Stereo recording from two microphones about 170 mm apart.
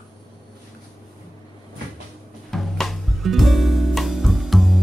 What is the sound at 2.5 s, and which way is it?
Music, centre (ahead or behind).